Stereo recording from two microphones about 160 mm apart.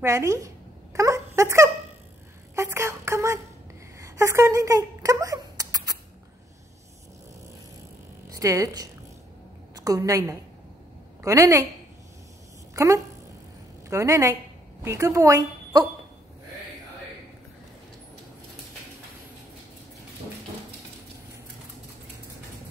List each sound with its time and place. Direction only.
0.0 s speech: 20° right (ahead or behind)
0.9 s a sound: 20° right (ahead or behind)
8.3 s a woman's voice: 20° right (ahead or behind)
12.7 s a woman's voice: 20° right (ahead or behind)